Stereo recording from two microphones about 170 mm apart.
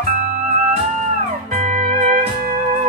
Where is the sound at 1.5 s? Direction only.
45° right (ahead or behind).